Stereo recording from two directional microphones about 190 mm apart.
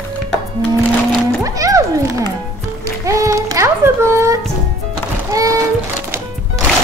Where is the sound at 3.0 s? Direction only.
15° right (ahead or behind).